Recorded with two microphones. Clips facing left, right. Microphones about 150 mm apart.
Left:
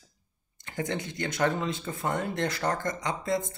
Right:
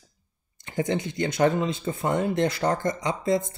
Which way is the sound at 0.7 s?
20° right (ahead or behind).